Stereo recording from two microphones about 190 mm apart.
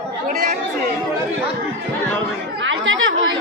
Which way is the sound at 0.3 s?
50° right (ahead or behind).